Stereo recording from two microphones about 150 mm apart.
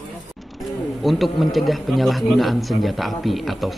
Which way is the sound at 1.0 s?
Centre (ahead or behind).